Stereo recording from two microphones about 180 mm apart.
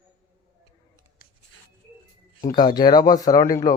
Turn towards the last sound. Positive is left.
turn(degrees=20)  # may be behind; listen again after turning